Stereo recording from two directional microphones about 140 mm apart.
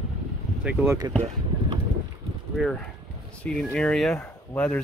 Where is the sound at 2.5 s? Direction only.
5° left (ahead or behind).